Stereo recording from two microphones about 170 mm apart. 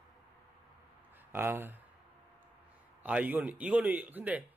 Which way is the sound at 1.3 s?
15° right (ahead or behind).